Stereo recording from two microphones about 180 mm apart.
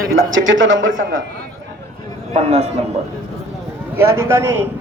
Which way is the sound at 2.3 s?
35° right (ahead or behind).